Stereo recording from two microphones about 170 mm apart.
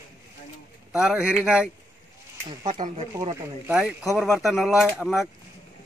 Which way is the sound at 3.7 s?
10° right (ahead or behind).